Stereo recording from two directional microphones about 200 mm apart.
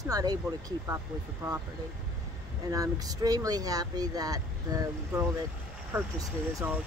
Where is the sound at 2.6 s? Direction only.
20° right (ahead or behind).